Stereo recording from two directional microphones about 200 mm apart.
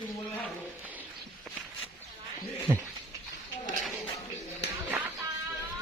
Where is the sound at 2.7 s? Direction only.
15° right (ahead or behind).